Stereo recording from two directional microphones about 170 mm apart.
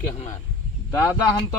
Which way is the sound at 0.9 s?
20° left (ahead or behind).